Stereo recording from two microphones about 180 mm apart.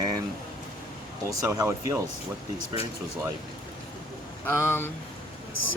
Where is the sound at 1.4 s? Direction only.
15° right (ahead or behind).